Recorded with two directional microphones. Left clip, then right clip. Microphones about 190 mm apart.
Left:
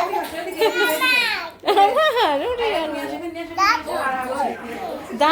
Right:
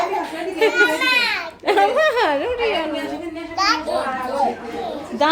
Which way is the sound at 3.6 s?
10° right (ahead or behind).